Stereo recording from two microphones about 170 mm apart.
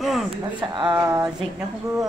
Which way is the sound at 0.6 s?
25° right (ahead or behind).